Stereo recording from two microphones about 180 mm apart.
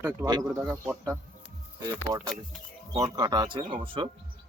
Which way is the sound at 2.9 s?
20° right (ahead or behind).